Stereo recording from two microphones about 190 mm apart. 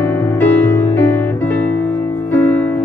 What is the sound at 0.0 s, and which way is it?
Music, 10° left (ahead or behind).